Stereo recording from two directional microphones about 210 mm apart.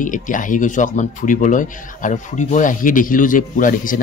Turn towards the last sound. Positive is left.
turn(degrees=40)  # may be behind; listen again after turning